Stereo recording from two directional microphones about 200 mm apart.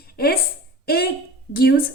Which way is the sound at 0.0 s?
50° left (ahead or behind).